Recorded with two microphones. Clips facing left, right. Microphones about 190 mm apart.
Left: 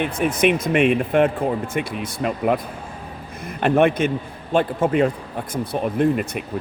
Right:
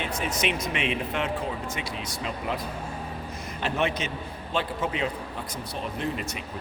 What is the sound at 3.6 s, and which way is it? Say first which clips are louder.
A man's voice: left 11 dB; 55° left (ahead or behind).